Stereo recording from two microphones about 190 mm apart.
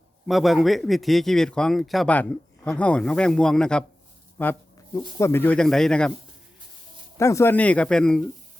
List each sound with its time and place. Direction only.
0.3 s a man's voice: centre (ahead or behind)
7.2 s speech: 15° left (ahead or behind)